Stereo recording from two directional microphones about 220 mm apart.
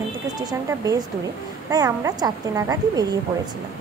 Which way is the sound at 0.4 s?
15° right (ahead or behind).